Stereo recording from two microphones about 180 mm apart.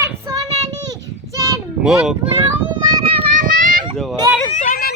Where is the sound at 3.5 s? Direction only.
50° right (ahead or behind).